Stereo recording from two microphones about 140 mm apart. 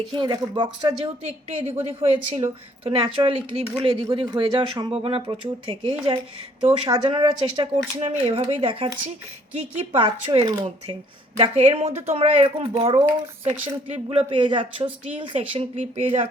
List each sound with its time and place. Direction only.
0.1 s speech: 35° right (ahead or behind)
1.2 s a woman's voice: 50° right (ahead or behind)
10.0 s speech: 35° right (ahead or behind)
11.3 s a woman's voice: 45° right (ahead or behind)